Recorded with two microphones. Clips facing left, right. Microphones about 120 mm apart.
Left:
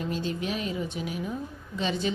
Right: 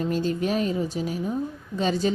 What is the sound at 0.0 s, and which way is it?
A woman's voice, 40° right (ahead or behind).